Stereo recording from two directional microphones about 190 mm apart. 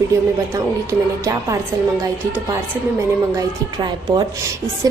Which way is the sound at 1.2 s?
15° right (ahead or behind).